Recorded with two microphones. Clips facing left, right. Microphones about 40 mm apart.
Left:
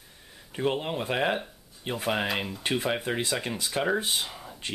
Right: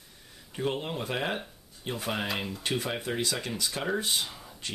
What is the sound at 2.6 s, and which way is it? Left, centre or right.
Speech, centre.